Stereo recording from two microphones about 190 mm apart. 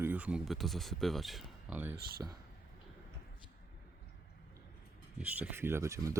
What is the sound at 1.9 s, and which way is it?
Speech, 55° right (ahead or behind).